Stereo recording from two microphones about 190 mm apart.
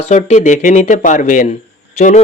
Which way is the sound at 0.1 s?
40° left (ahead or behind).